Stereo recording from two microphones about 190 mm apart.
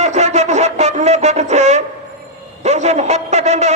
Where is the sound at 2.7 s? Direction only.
35° right (ahead or behind).